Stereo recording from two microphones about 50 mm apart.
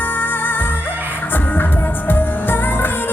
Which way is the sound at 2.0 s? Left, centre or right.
Left.